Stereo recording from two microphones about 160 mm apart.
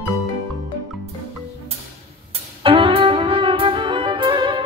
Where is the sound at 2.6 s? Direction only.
35° right (ahead or behind).